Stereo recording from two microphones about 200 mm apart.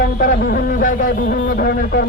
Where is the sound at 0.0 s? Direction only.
45° left (ahead or behind).